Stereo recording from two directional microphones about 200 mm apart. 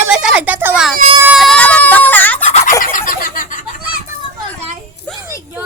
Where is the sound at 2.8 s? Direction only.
45° left (ahead or behind).